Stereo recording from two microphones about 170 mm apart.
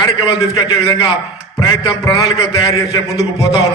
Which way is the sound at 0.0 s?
25° left (ahead or behind).